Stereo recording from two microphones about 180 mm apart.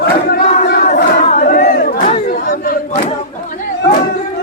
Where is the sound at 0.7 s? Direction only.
45° left (ahead or behind).